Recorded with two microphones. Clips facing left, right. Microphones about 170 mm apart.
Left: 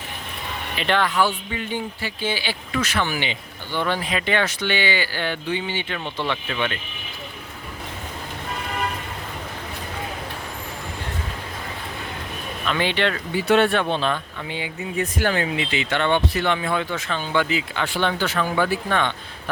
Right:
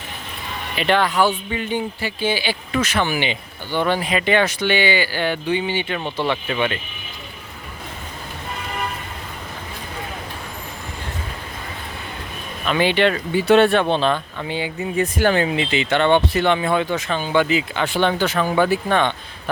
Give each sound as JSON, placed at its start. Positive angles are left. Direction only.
{"t": 0.8, "sound": "speech", "side_deg": -10}
{"t": 1.2, "sound": "speech", "side_deg": -20}
{"t": 12.6, "sound": "speech", "side_deg": -15}
{"t": 13.3, "sound": "speech", "side_deg": -30}